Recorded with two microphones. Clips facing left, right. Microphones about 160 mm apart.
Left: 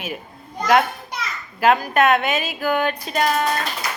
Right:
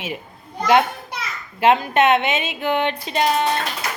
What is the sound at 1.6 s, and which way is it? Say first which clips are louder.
Speech: right 1 dB; 25° right (ahead or behind).